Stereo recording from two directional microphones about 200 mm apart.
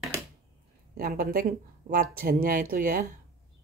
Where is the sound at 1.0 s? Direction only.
45° right (ahead or behind).